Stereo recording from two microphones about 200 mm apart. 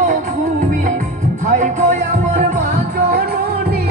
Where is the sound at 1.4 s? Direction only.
40° right (ahead or behind).